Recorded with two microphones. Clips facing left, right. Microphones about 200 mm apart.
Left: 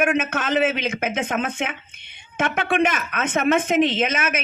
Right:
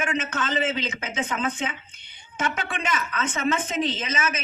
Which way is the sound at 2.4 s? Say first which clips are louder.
Left 8 dB; 55° left (ahead or behind).